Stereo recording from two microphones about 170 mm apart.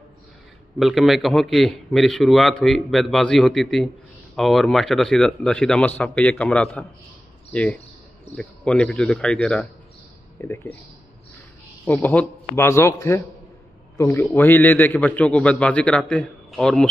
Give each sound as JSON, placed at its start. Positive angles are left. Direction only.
{"t": 0.7, "sound": "a man's voice", "side_deg": 0}
{"t": 10.4, "sound": "a man's voice", "side_deg": 15}
{"t": 11.8, "sound": "a man's voice", "side_deg": 10}